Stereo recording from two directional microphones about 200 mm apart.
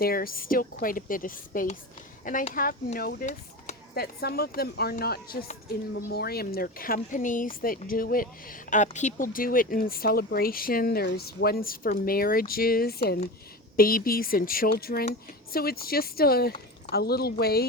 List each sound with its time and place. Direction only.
0.0 s speech: 45° left (ahead or behind)